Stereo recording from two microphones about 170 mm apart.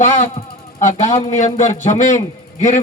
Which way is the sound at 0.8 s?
45° left (ahead or behind).